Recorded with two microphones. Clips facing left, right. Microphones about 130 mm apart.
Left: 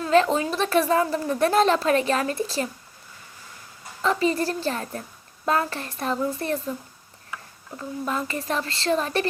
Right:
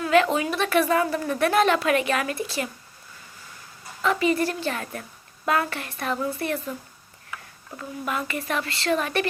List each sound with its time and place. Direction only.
0.0 s a woman's voice: 30° left (ahead or behind)
4.0 s a woman's voice: 30° left (ahead or behind)
7.8 s a woman's voice: 30° left (ahead or behind)